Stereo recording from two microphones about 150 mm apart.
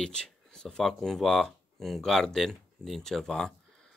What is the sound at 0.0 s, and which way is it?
Speech, 5° left (ahead or behind).